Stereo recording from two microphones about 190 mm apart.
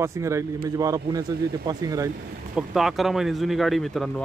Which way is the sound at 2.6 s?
Centre (ahead or behind).